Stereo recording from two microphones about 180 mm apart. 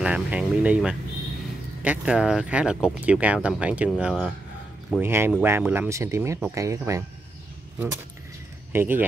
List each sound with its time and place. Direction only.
0.0 s speech: 5° right (ahead or behind)
5.0 s speech: 15° right (ahead or behind)
8.7 s speech: 10° right (ahead or behind)